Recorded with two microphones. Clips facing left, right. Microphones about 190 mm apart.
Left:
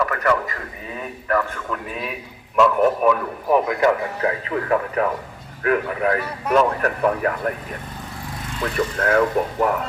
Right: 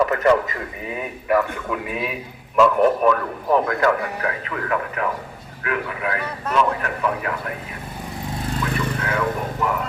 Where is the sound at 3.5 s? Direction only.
20° left (ahead or behind); by 7.5 s 40° left (ahead or behind).